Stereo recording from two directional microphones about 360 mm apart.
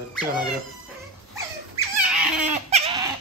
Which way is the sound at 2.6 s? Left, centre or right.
Centre.